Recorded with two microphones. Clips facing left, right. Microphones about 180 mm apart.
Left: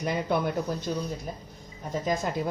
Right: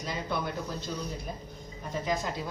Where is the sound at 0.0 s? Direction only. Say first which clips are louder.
Left 6 dB; 55° left (ahead or behind).